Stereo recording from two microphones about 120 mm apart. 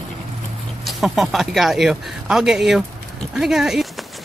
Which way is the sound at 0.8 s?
Centre (ahead or behind).